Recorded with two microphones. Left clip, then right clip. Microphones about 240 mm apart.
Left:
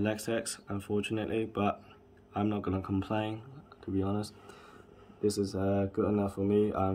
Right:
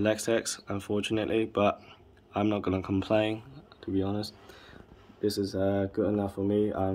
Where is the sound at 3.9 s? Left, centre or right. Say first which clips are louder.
Right 3 dB; centre.